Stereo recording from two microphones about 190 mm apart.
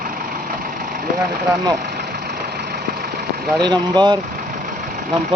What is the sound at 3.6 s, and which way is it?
Speech, 25° right (ahead or behind).